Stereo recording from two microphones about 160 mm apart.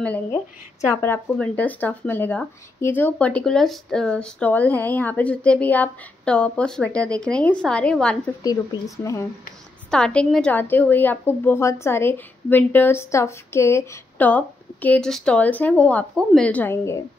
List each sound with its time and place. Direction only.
0.0 s speech: 10° left (ahead or behind)
8.4 s speech: 20° left (ahead or behind)
9.8 s speech: 5° left (ahead or behind)